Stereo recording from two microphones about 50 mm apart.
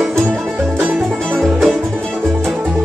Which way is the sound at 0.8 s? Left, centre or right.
Right.